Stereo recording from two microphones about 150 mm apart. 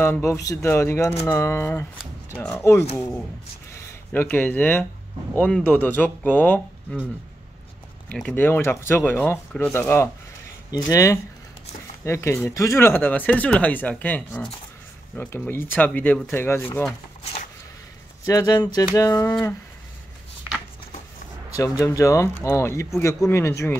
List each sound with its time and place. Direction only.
0.0 s speech: 15° left (ahead or behind)
4.1 s speech: 15° left (ahead or behind)
8.1 s speech: 10° left (ahead or behind)
18.2 s speech: 25° left (ahead or behind)
21.5 s speech: 20° left (ahead or behind)